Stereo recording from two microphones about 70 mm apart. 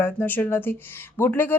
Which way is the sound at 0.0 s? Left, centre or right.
Left.